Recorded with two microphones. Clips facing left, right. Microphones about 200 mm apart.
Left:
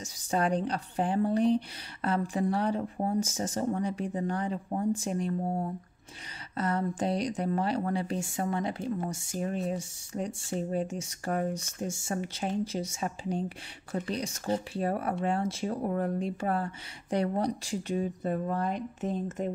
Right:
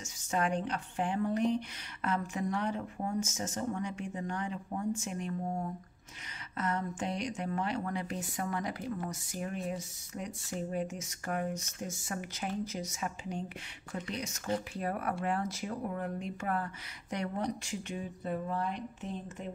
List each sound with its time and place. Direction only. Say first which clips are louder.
0.0 s a woman's voice: left 4 dB; 35° left (ahead or behind)